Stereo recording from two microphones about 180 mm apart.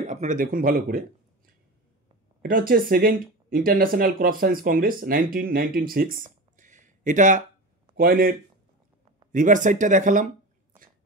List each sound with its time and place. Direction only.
0.0 s speech: 40° right (ahead or behind)
2.4 s a man's voice: 55° right (ahead or behind)